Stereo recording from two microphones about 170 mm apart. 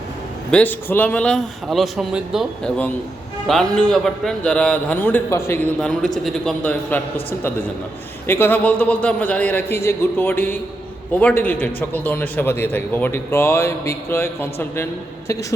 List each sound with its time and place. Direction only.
0.5 s a man's voice: 10° left (ahead or behind)
8.3 s a man's voice: 10° left (ahead or behind)